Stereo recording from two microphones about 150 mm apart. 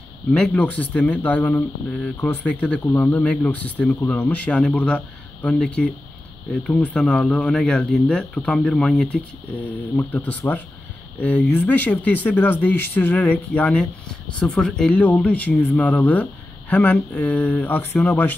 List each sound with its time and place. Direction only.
0.3 s speech: 10° left (ahead or behind)